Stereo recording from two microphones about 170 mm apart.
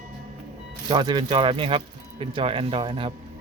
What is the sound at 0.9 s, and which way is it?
Speech, 25° right (ahead or behind).